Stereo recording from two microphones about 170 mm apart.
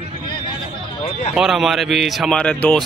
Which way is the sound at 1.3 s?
5° right (ahead or behind).